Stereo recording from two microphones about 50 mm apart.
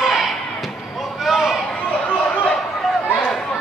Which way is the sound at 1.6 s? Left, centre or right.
Left.